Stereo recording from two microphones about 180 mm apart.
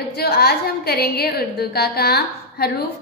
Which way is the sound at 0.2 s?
60° left (ahead or behind).